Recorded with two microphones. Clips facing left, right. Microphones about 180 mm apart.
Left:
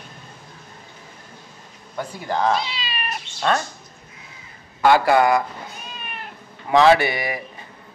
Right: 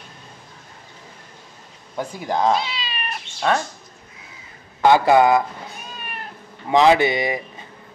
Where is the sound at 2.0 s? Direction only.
15° right (ahead or behind).